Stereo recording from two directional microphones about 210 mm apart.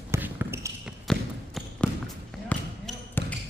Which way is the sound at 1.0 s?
Centre (ahead or behind).